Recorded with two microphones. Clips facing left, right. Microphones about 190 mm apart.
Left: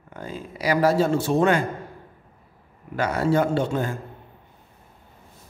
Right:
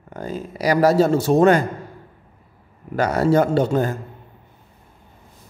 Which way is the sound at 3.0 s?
40° right (ahead or behind).